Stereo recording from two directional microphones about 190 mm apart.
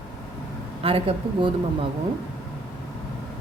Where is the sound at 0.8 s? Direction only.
30° right (ahead or behind).